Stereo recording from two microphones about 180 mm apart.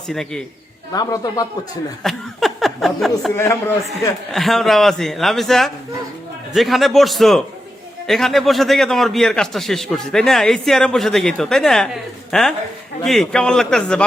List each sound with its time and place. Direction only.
0.1 s a man's voice: centre (ahead or behind)
0.9 s a man's voice: 20° left (ahead or behind)
2.0 s a sound: centre (ahead or behind)
3.3 s a man's voice: 15° left (ahead or behind)
4.3 s a man's voice: centre (ahead or behind)